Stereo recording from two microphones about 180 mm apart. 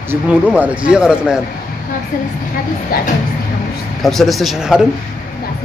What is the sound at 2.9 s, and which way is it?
Speech, 55° left (ahead or behind).